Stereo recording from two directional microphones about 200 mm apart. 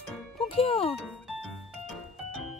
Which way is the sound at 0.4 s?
30° left (ahead or behind).